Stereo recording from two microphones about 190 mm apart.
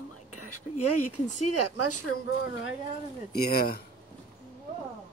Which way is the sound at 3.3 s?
55° left (ahead or behind).